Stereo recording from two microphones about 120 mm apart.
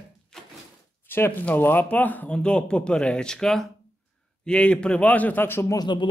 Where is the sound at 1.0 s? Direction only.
15° left (ahead or behind).